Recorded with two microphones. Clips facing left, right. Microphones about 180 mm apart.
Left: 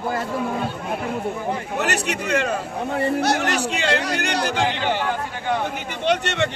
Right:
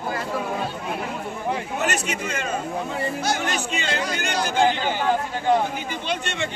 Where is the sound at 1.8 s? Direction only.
70° left (ahead or behind).